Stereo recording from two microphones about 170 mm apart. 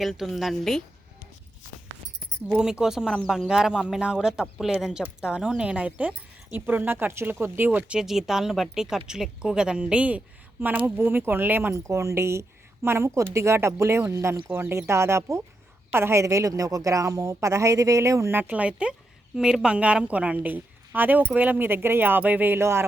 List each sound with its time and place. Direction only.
0.0 s a woman's voice: centre (ahead or behind)
2.5 s a woman's voice: 5° right (ahead or behind)